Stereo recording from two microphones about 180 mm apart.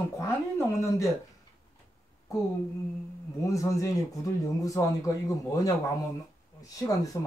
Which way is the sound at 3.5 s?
20° left (ahead or behind).